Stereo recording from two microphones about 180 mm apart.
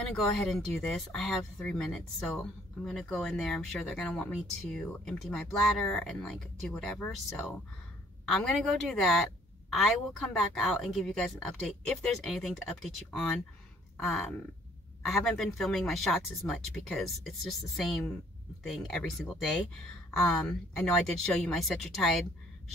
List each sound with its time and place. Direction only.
0.1 s speech: centre (ahead or behind)
14.0 s speech: 5° left (ahead or behind)